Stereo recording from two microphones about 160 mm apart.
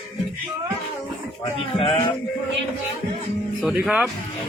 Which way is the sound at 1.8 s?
35° left (ahead or behind).